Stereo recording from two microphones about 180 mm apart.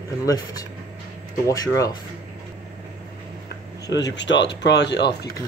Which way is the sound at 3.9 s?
75° left (ahead or behind).